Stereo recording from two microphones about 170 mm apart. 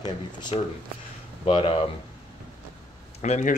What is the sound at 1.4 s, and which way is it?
Speech, 30° left (ahead or behind).